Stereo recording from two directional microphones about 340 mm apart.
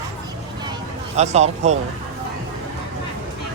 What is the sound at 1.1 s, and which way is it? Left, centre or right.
Speech, centre.